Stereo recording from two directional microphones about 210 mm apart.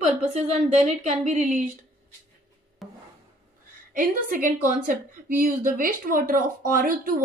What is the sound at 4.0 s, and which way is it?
A woman's voice, 40° right (ahead or behind).